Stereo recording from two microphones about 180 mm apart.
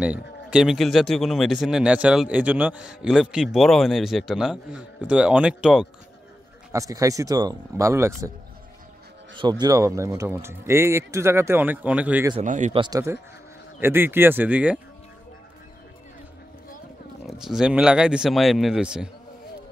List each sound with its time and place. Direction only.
0.5 s speech: 5° right (ahead or behind)
6.7 s speech: 20° right (ahead or behind)
9.4 s speech: 20° right (ahead or behind)
12.4 s speech: 40° right (ahead or behind)
12.7 s speech: 25° right (ahead or behind)
13.7 s speech: 10° right (ahead or behind)
17.3 s speech: 5° right (ahead or behind)